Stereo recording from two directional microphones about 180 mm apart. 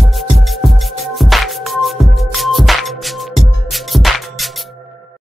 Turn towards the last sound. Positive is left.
turn(degrees=0)  # may be behind; listen again after turning